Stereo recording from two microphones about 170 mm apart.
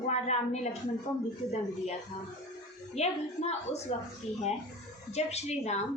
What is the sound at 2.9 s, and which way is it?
A woman's voice, 40° left (ahead or behind).